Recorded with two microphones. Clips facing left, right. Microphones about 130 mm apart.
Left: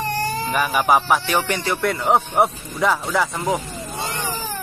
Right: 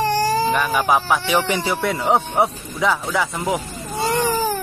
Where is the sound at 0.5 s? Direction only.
10° left (ahead or behind).